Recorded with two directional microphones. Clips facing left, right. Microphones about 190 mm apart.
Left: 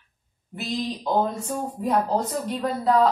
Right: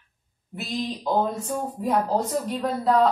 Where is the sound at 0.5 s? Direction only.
Centre (ahead or behind).